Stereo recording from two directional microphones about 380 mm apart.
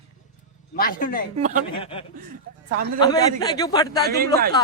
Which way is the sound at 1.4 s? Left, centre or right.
Centre.